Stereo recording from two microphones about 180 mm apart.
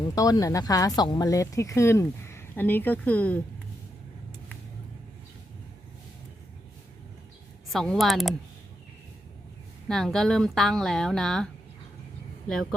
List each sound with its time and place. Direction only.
0.1 s speech: 20° left (ahead or behind)
7.7 s a woman's voice: centre (ahead or behind)
9.9 s a woman's voice: 5° left (ahead or behind)